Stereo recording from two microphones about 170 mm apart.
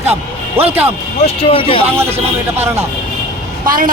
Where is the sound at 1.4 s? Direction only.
30° left (ahead or behind).